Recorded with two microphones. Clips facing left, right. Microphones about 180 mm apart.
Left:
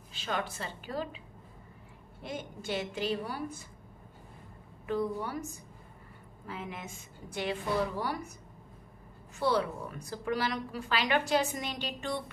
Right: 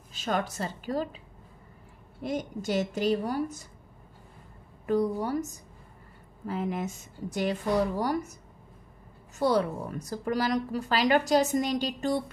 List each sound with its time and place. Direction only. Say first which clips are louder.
0.1 s a woman's voice: right 5 dB; 45° right (ahead or behind)
2.2 s a woman's voice: right 7 dB; 40° right (ahead or behind)
4.8 s a woman's voice: right 6 dB; 40° right (ahead or behind)
9.4 s a woman's voice: right 4 dB; 40° right (ahead or behind)